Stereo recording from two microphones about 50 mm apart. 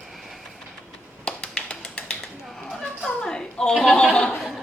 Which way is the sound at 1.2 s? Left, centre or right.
Left.